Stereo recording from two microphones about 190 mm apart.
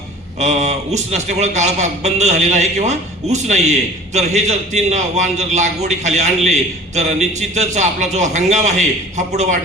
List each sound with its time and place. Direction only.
0.3 s a man's voice: 35° right (ahead or behind)